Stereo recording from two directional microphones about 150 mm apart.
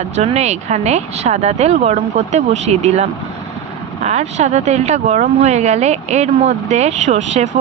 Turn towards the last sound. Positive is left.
turn(degrees=-50)  # may be behind; listen again after turning